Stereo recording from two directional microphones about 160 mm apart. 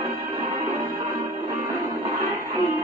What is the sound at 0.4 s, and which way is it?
Music, 35° right (ahead or behind).